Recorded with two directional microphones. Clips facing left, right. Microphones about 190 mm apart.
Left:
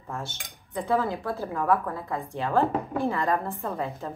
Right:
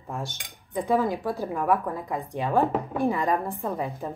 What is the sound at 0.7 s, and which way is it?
A woman's voice, 15° right (ahead or behind).